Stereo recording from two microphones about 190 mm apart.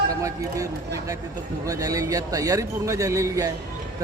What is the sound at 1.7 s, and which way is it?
A man's voice, 20° right (ahead or behind).